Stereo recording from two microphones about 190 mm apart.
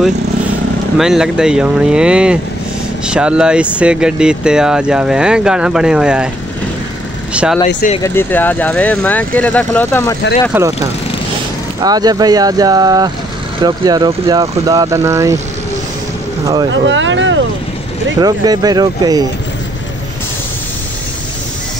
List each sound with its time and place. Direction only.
0.9 s speech: centre (ahead or behind)
7.6 s speech: 35° left (ahead or behind)
8.0 s speech: 10° left (ahead or behind)
10.5 s speech: 10° right (ahead or behind)
11.8 s speech: 20° right (ahead or behind)
16.8 s speech: 75° right (ahead or behind)
18.2 s speech: 20° right (ahead or behind)